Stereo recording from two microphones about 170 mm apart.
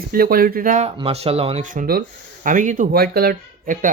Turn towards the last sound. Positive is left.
turn(degrees=-55)  # may be behind; listen again after turning